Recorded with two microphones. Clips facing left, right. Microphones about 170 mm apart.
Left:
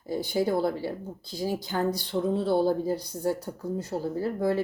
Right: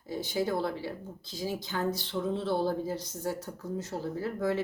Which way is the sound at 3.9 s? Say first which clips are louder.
Left 6 dB; 35° left (ahead or behind).